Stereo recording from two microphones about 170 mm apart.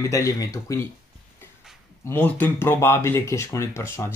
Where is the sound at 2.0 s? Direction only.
10° left (ahead or behind).